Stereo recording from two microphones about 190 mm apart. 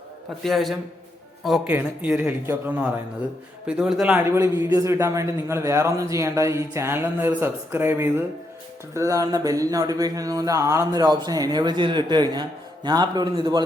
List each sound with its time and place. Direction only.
0.4 s a man's voice: centre (ahead or behind); by 13.7 s 20° right (ahead or behind)